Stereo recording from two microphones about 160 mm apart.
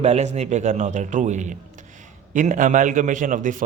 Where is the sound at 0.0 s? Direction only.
45° right (ahead or behind).